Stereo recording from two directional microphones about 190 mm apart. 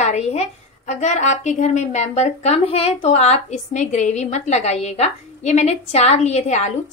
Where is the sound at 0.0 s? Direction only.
35° left (ahead or behind).